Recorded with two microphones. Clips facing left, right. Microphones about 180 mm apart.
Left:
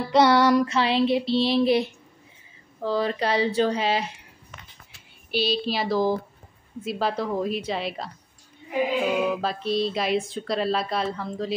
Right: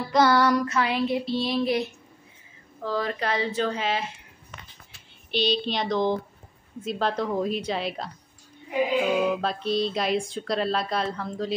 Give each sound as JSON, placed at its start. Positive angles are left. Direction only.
{"t": 0.1, "sound": "child singing", "side_deg": 25}
{"t": 2.8, "sound": "child singing", "side_deg": 30}
{"t": 3.7, "sound": "a woman's voice", "side_deg": 35}
{"t": 5.3, "sound": "speech", "side_deg": 5}